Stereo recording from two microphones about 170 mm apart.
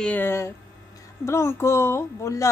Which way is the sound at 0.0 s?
10° left (ahead or behind).